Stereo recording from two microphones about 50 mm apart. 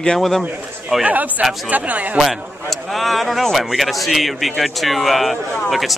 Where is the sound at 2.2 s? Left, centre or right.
Centre.